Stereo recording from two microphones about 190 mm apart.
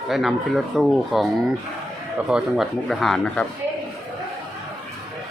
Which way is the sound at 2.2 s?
5° right (ahead or behind).